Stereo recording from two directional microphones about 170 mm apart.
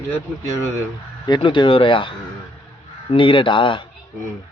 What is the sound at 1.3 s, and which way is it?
A man's voice, 25° left (ahead or behind).